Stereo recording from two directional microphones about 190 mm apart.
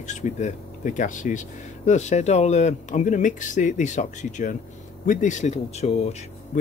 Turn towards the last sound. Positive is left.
turn(degrees=35)  # may be behind; listen again after turning